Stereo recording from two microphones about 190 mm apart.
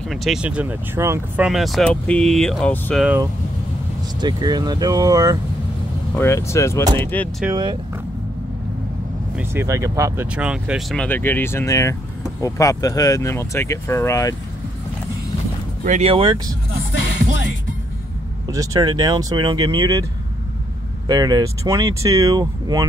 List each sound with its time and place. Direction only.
0.1 s speech: centre (ahead or behind)
4.2 s speech: 20° right (ahead or behind)
6.1 s speech: 15° left (ahead or behind)
6.8 s speech: 20° right (ahead or behind)
7.1 s speech: 10° left (ahead or behind)
9.3 s speech: 10° right (ahead or behind)
10.3 s speech: 5° right (ahead or behind); by 14.3 s 15° left (ahead or behind)
15.8 s speech: 35° right (ahead or behind)
18.5 s speech: 20° right (ahead or behind)
21.1 s speech: 20° right (ahead or behind)